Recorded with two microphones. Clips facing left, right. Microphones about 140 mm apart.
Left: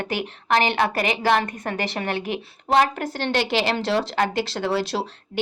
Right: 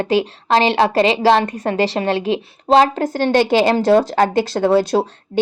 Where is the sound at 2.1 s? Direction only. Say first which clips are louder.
Right 8 dB; 90° right.